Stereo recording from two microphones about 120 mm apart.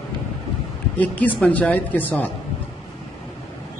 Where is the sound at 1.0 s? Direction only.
10° left (ahead or behind).